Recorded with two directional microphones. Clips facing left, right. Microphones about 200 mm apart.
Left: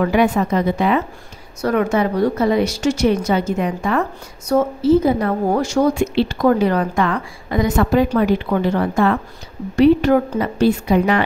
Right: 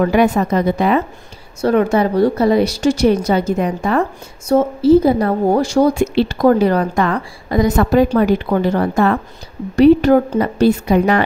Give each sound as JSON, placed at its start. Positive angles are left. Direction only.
{"t": 0.0, "sound": "a woman's voice", "side_deg": -40}